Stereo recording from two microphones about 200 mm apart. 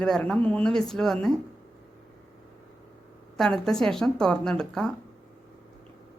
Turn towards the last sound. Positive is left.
turn(degrees=5)  # may be behind; listen again after turning